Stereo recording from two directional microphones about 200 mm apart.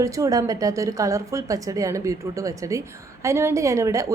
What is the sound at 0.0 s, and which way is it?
A woman's voice, 15° right (ahead or behind).